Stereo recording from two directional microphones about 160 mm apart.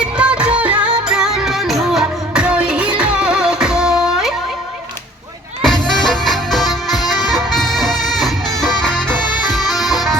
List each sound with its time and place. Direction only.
0.0 s music: 5° right (ahead or behind)
5.6 s music: centre (ahead or behind)